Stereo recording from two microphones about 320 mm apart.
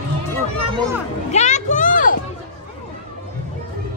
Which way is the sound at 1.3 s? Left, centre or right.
Left.